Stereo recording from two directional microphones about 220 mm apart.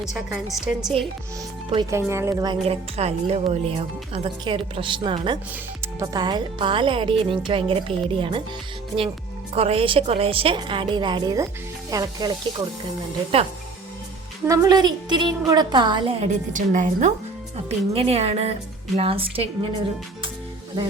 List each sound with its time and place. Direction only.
0.0 s a woman's voice: centre (ahead or behind)
1.7 s speech: 15° right (ahead or behind)
9.6 s speech: 25° right (ahead or behind)
14.4 s speech: 15° right (ahead or behind)
16.5 s a woman's voice: 35° right (ahead or behind)